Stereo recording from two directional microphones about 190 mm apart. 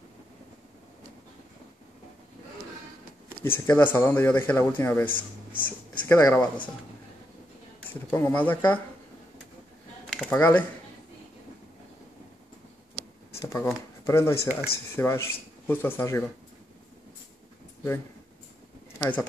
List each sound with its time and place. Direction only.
3.4 s speech: 10° left (ahead or behind)
7.9 s speech: 10° left (ahead or behind)
10.0 s computer keyboard: 5° left (ahead or behind)
13.4 s a sound: 15° left (ahead or behind)
14.0 s speech: 15° left (ahead or behind)
18.9 s speech: 10° left (ahead or behind)